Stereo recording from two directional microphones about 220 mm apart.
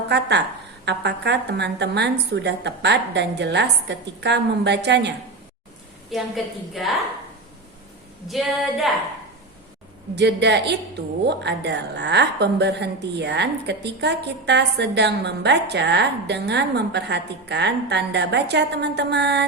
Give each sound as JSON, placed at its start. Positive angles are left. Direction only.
{"t": 0.1, "sound": "a woman's voice", "side_deg": -50}
{"t": 6.1, "sound": "a woman's voice", "side_deg": 0}
{"t": 8.3, "sound": "a woman's voice", "side_deg": 0}
{"t": 10.2, "sound": "a woman's voice", "side_deg": -50}